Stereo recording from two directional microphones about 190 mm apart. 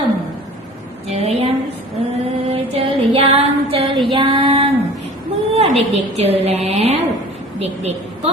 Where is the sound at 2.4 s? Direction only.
30° right (ahead or behind).